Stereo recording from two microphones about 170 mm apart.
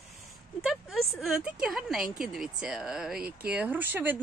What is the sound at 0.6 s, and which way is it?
Speech, centre (ahead or behind).